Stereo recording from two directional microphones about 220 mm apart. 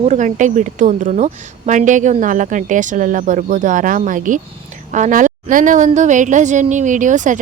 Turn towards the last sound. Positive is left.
turn(degrees=-35)  # may be behind; listen again after turning